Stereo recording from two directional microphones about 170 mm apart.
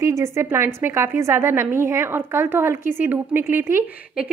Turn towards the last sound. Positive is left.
turn(degrees=-15)  # may be behind; listen again after turning